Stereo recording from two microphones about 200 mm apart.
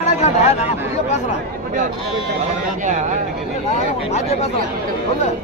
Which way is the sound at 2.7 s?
35° right (ahead or behind).